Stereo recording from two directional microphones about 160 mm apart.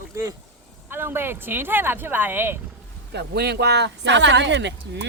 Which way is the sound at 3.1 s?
90° right.